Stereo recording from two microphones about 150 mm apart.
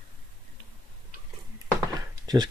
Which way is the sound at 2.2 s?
25° right (ahead or behind).